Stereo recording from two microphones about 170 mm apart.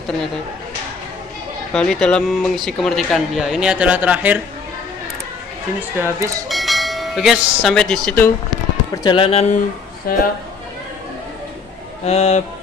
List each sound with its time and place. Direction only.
1.7 s speech: 5° left (ahead or behind)
5.9 s speech: 15° right (ahead or behind)
6.5 s speech: centre (ahead or behind)
9.0 s speech: 30° left (ahead or behind)
10.1 s a man's voice: 60° left (ahead or behind)
12.0 s speech: 40° left (ahead or behind)